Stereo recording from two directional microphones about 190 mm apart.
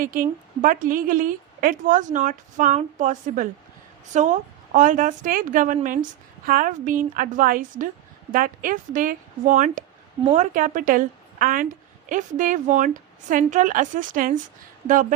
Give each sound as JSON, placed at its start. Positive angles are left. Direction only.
{"t": 0.0, "sound": "a woman's voice", "side_deg": -45}